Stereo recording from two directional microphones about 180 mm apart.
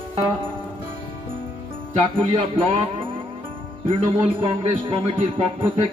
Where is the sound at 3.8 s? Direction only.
30° right (ahead or behind).